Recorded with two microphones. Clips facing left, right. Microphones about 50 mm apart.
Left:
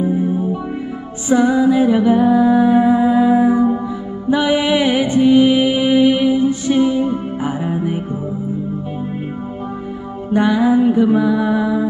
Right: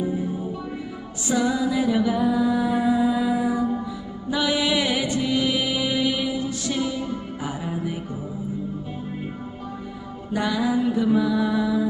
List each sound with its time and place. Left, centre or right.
0.0 s music: left
10.3 s music: left